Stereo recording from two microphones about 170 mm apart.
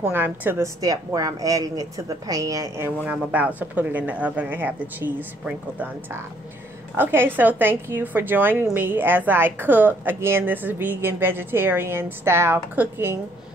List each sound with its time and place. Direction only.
0.0 s a woman's voice: 10° right (ahead or behind)
3.0 s a woman's voice: 5° right (ahead or behind)
7.0 s a woman's voice: 10° right (ahead or behind)